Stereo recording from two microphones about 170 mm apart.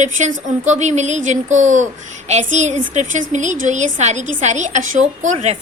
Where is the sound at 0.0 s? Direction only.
45° right (ahead or behind).